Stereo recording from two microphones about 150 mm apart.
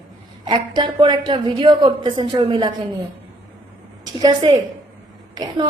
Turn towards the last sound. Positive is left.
turn(degrees=-30)  # may be behind; listen again after turning